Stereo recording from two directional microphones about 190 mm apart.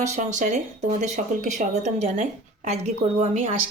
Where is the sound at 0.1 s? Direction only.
40° right (ahead or behind).